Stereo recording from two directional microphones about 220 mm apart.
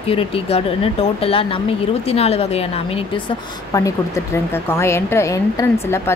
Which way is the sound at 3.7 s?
15° left (ahead or behind).